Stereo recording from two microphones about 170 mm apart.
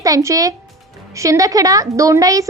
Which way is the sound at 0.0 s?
20° right (ahead or behind).